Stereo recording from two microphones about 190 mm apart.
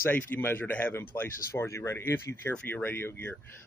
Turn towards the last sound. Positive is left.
turn(degrees=10)  # may be behind; listen again after turning